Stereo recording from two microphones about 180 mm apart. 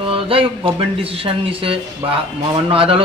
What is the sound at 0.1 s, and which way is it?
Speech, 30° right (ahead or behind).